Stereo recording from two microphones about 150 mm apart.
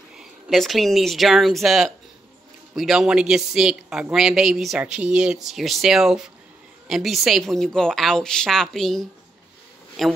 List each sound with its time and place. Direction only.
0.2 s speech: centre (ahead or behind)